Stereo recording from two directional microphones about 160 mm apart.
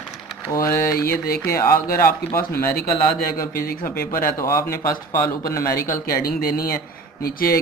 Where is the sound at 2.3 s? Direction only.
15° left (ahead or behind).